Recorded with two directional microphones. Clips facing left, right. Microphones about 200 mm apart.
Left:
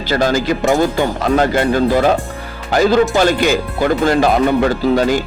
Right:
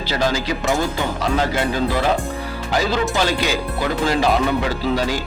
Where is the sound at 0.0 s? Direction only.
50° left (ahead or behind).